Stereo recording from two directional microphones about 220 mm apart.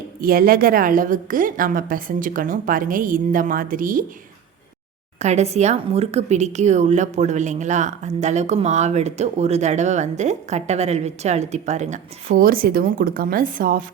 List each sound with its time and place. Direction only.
0.2 s speech: 40° right (ahead or behind)
5.2 s speech: 30° right (ahead or behind)